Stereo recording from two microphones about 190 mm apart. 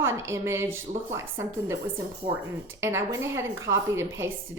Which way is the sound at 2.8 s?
15° right (ahead or behind).